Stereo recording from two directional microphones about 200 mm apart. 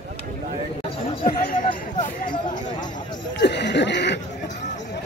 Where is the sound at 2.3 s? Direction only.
20° left (ahead or behind).